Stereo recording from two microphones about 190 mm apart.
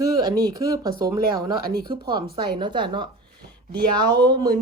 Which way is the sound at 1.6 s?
55° right (ahead or behind).